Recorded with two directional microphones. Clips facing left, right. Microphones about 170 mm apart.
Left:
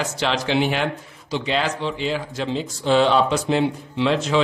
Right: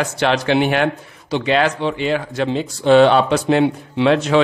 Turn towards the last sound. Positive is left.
turn(degrees=-60)  # may be behind; listen again after turning